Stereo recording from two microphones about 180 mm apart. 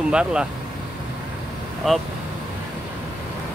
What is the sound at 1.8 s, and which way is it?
Speech, centre (ahead or behind).